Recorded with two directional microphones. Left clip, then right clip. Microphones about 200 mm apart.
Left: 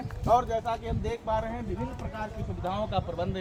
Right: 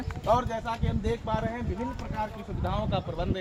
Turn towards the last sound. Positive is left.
turn(degrees=-10)  # may be behind; listen again after turning